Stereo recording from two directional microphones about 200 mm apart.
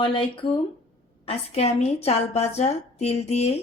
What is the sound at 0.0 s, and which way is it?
A woman's voice, 25° left (ahead or behind).